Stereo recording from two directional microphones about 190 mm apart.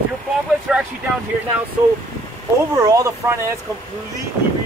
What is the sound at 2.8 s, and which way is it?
Speech, 20° right (ahead or behind).